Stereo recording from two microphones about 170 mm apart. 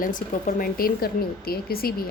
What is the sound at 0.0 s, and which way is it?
Speech, 55° left (ahead or behind).